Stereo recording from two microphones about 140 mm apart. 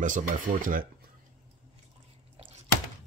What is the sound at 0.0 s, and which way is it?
Speech, 70° right (ahead or behind).